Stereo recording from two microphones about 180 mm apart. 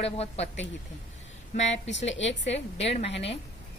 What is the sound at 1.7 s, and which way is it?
Speech, 90° left.